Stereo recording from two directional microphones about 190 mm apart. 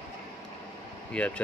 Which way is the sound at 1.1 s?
5° left (ahead or behind).